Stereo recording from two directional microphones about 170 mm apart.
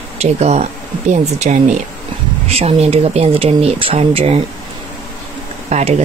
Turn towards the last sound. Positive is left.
turn(degrees=-40)  # may be behind; listen again after turning